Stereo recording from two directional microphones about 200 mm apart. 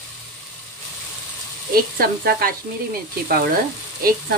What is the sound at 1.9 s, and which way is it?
Frying, 50° right (ahead or behind).